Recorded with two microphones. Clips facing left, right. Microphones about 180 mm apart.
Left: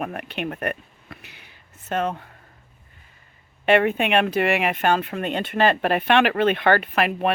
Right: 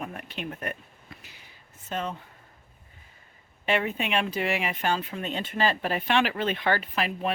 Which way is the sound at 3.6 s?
65° left (ahead or behind).